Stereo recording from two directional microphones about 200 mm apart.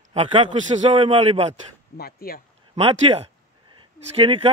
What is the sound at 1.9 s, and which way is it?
Speech, 50° left (ahead or behind).